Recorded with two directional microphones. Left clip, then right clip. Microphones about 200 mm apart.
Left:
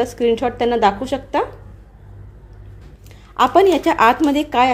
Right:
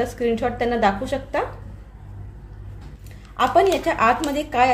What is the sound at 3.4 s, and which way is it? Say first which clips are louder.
A woman's voice: left 4 dB; 50° left (ahead or behind).